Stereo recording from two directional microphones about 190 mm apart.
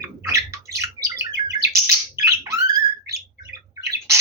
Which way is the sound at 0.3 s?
15° right (ahead or behind).